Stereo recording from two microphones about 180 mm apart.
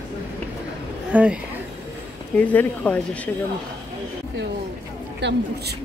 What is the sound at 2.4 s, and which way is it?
Speech, 10° left (ahead or behind).